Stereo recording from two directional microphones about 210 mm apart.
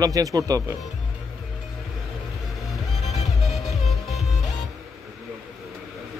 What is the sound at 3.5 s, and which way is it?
Music, centre (ahead or behind).